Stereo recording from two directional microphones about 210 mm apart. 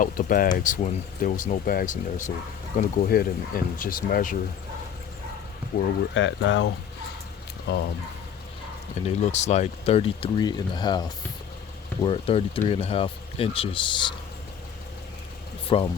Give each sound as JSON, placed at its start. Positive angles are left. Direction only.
{"t": 0.0, "sound": "speech", "side_deg": 40}
{"t": 5.7, "sound": "speech", "side_deg": 45}
{"t": 6.1, "sound": "speech", "side_deg": 60}
{"t": 7.7, "sound": "speech", "side_deg": 50}
{"t": 9.0, "sound": "speech", "side_deg": 30}
{"t": 15.7, "sound": "speech", "side_deg": 25}